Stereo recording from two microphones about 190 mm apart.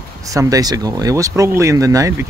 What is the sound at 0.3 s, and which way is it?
Speech, 15° right (ahead or behind).